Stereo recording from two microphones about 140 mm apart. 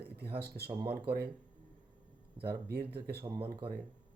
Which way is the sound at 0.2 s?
90° right.